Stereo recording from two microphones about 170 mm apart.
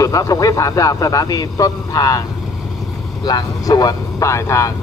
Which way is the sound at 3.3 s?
25° left (ahead or behind).